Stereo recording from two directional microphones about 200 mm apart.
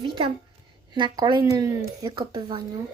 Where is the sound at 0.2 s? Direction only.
30° right (ahead or behind).